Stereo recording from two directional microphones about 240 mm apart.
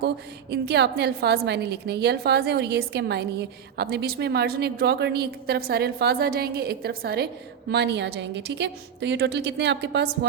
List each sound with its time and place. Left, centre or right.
0.5 s a woman's voice: right